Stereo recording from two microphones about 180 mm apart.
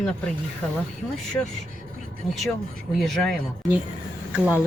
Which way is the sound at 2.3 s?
Centre (ahead or behind).